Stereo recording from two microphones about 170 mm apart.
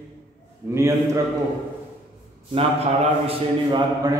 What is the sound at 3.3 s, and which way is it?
Speech, 25° right (ahead or behind).